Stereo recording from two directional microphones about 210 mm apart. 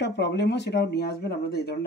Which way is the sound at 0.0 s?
55° left (ahead or behind).